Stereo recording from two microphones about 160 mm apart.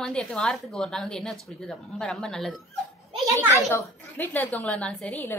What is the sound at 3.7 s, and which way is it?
A woman's voice, 10° left (ahead or behind).